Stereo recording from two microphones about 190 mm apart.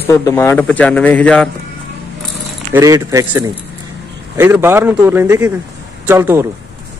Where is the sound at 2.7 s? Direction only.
15° right (ahead or behind).